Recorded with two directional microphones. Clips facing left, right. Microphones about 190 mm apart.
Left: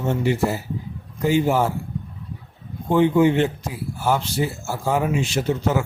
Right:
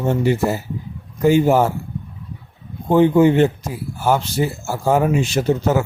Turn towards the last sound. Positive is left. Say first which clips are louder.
# right 4 dB
turn(degrees=-40)  # may be behind; listen again after turning